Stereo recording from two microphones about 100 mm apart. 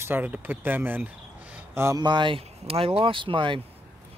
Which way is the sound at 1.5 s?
25° right (ahead or behind).